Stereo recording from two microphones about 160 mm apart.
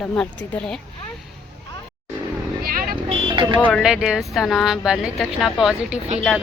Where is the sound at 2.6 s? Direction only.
65° right (ahead or behind).